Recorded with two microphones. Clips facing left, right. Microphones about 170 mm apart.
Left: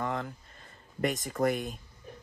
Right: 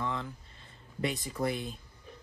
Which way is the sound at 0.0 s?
50° left (ahead or behind).